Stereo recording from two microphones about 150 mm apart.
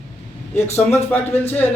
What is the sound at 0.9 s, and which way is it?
Speech, 15° left (ahead or behind).